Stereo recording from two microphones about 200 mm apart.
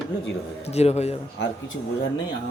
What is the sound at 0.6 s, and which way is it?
Speech, 30° left (ahead or behind).